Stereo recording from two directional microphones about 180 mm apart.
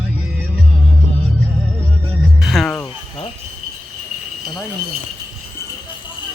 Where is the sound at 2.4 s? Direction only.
Centre (ahead or behind).